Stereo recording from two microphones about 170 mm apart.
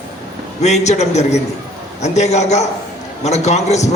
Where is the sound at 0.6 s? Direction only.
40° left (ahead or behind).